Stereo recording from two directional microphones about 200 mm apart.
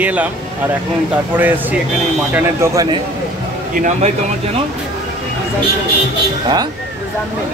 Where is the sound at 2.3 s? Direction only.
15° right (ahead or behind).